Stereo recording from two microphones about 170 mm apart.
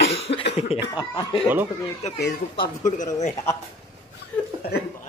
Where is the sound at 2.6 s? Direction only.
45° left (ahead or behind).